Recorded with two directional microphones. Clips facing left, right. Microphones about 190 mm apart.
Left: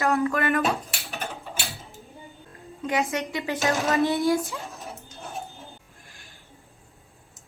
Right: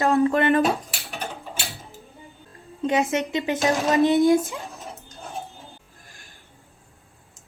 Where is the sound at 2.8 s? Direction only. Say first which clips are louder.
Right 4 dB; 25° right (ahead or behind).